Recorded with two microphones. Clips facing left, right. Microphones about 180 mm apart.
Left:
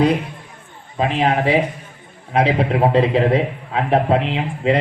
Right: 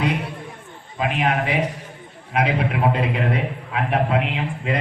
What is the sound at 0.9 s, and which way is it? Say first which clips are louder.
A man's voice: left 4 dB; 30° left (ahead or behind).